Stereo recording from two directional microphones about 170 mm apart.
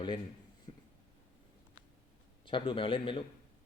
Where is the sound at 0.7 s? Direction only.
25° left (ahead or behind).